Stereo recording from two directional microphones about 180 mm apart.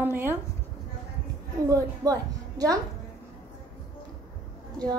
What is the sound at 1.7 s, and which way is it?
A woman's voice, 20° right (ahead or behind).